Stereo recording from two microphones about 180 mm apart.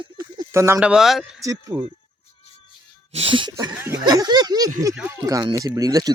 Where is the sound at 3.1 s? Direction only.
25° right (ahead or behind).